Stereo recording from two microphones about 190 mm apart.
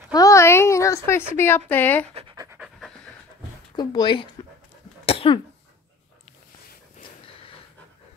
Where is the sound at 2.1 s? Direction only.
25° right (ahead or behind).